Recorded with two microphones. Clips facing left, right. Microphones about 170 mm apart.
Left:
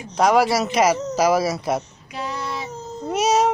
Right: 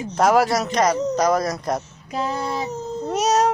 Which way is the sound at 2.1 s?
40° right (ahead or behind).